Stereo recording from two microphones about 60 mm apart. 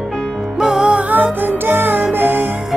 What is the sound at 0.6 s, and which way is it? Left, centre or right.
Music, centre.